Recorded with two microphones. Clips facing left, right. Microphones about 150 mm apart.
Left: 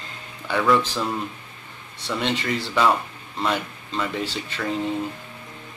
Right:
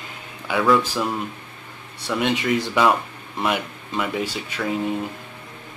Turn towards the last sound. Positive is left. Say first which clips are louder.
# right 2 dB
turn(degrees=-10)  # may be behind; listen again after turning